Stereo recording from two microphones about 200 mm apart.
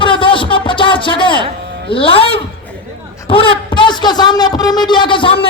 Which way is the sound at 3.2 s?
25° left (ahead or behind).